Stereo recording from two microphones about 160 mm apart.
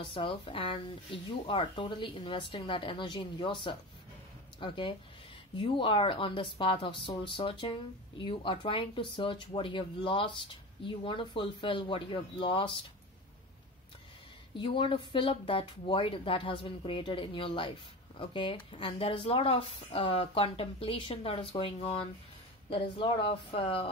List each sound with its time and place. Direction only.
0.0 s speech: 30° left (ahead or behind)
14.6 s speech: 30° left (ahead or behind)